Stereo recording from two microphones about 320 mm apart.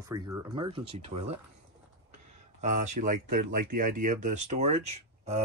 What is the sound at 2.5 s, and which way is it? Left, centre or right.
Speech, right.